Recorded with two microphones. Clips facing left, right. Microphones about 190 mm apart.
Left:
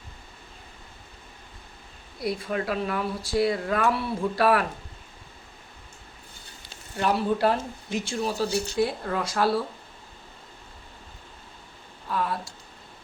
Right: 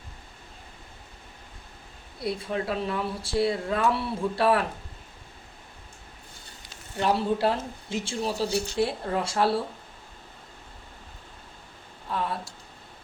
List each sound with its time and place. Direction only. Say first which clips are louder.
2.2 s speech: left 1 dB; 30° right (ahead or behind)
6.9 s speech: even; 25° right (ahead or behind)
12.0 s a sound: left 2 dB; 25° right (ahead or behind)